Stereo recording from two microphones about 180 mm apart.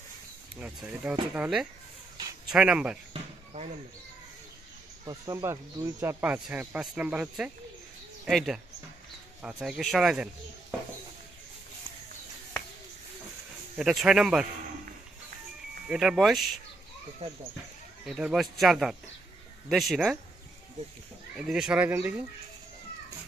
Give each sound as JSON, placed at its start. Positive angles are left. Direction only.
{"t": 0.6, "sound": "speech", "side_deg": -10}
{"t": 3.1, "sound": "a sound", "side_deg": -35}
{"t": 5.0, "sound": "speech", "side_deg": -20}
{"t": 13.7, "sound": "speech", "side_deg": -5}
{"t": 15.9, "sound": "speech", "side_deg": -5}
{"t": 18.0, "sound": "speech", "side_deg": 0}
{"t": 21.4, "sound": "speech", "side_deg": -5}